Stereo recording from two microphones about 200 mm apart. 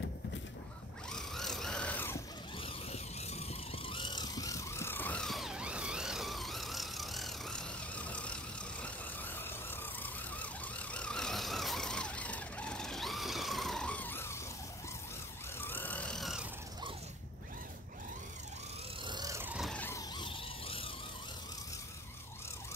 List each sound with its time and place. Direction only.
1.1 s vehicle: centre (ahead or behind)
2.6 s vehicle: 30° left (ahead or behind); by 14.4 s 10° left (ahead or behind)
15.6 s vehicle: 10° left (ahead or behind)
19.0 s vehicle: 20° right (ahead or behind)
19.7 s vehicle: 10° left (ahead or behind); by 20.9 s 25° left (ahead or behind)